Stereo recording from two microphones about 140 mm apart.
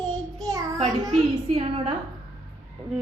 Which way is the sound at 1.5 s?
40° right (ahead or behind).